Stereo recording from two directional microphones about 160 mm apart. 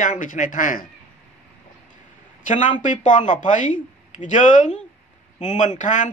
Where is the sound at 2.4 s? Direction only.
50° left (ahead or behind).